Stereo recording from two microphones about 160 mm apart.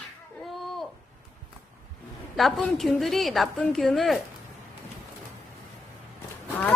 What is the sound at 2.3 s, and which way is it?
A woman's voice, centre (ahead or behind).